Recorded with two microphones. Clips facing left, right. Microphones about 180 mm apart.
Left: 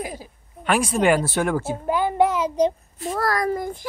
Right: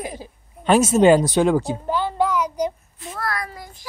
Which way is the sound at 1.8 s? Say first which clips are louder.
Left 2 dB; 15° left (ahead or behind).